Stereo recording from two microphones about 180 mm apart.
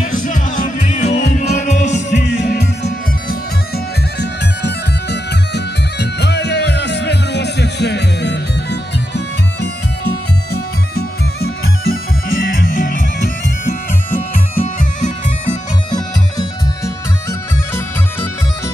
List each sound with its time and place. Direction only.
0.0 s music: 45° left (ahead or behind); by 12.6 s 90° left
12.6 s music: 50° left (ahead or behind)
14.3 s bagpipes: 45° left (ahead or behind)
16.3 s music: 15° left (ahead or behind)